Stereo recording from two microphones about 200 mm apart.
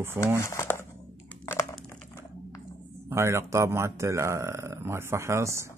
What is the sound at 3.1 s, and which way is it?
Speech, 15° right (ahead or behind).